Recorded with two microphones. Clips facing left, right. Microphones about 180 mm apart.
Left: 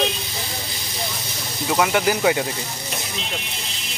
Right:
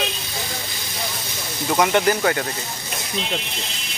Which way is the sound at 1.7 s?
Centre (ahead or behind).